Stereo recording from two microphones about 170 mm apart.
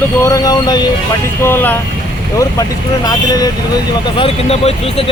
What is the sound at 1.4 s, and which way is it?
Speech, 10° left (ahead or behind).